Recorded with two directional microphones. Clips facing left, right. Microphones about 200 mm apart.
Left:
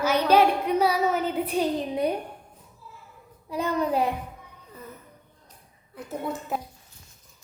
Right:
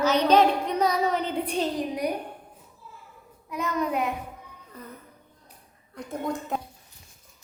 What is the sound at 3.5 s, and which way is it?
Speech, 30° left (ahead or behind).